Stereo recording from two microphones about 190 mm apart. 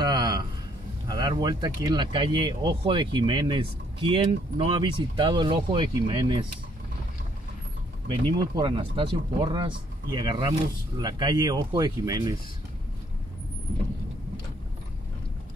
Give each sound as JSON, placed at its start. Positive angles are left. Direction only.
{"t": 0.0, "sound": "a sound", "side_deg": -20}
{"t": 1.0, "sound": "speech", "side_deg": -20}
{"t": 8.1, "sound": "speech", "side_deg": -25}